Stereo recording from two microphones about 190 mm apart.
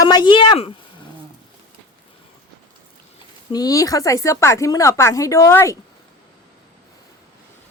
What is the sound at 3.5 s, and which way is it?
Speech, 20° left (ahead or behind).